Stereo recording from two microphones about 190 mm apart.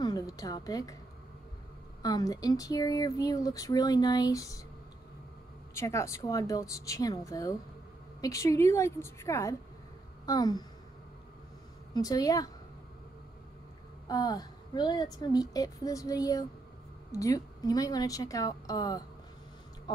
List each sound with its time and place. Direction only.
0.0 s a sound: 20° left (ahead or behind)
2.0 s speech: 20° left (ahead or behind)
5.8 s speech: 15° left (ahead or behind)
11.9 s speech: 20° left (ahead or behind)
14.0 s speech: 20° left (ahead or behind)